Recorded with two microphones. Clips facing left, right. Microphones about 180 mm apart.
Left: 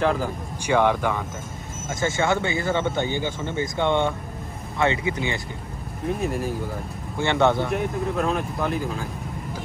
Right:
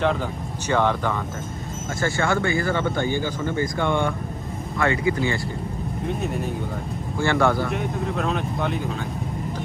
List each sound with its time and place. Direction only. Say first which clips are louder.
0.0 s speech: even; 5° left (ahead or behind); by 5.4 s 20° left (ahead or behind)
6.2 s speech: left 3 dB; centre (ahead or behind)
7.2 s speech: even; 20° left (ahead or behind)
8.2 s speech: even; 5° left (ahead or behind)